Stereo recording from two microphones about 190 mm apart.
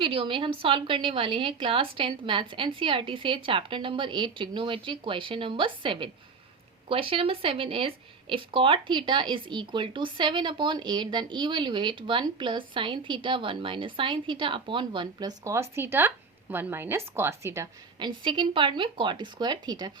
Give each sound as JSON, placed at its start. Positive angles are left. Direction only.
{"t": 0.0, "sound": "a woman's voice", "side_deg": -25}
{"t": 18.2, "sound": "a woman's voice", "side_deg": -25}